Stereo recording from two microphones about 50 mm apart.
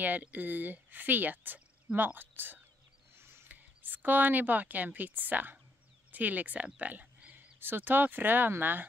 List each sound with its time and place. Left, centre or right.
0.2 s speech: right
3.2 s mechanisms: right
3.4 s speech: right
7.6 s speech: right